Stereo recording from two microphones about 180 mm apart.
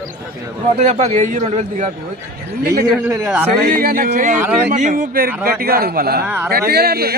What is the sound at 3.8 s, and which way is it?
A man's voice, 50° right (ahead or behind).